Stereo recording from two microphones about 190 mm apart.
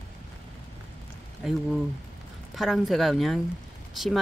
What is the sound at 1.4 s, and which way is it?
Speech, centre (ahead or behind).